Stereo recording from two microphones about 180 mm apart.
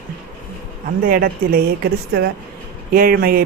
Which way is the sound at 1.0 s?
55° right (ahead or behind).